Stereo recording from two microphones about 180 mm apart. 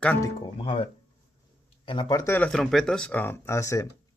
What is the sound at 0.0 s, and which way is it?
Speech, 10° left (ahead or behind).